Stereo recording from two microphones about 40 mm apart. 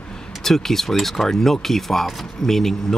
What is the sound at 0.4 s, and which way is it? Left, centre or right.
Speech, centre.